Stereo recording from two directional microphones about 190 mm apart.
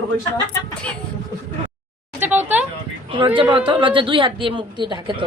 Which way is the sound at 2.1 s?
10° right (ahead or behind).